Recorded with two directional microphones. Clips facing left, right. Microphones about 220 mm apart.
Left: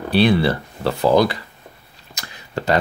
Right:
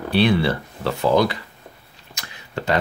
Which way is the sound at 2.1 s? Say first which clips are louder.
Left 3 dB; 40° left (ahead or behind).